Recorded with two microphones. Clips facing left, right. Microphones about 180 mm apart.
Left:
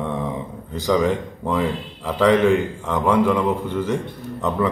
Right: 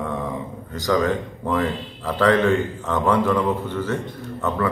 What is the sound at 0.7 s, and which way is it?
Speech, 15° left (ahead or behind).